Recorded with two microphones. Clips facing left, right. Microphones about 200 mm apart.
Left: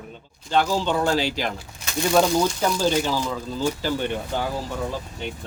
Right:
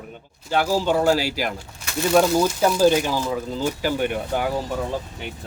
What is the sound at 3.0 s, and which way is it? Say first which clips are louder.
Speech: right 1 dB; 15° right (ahead or behind).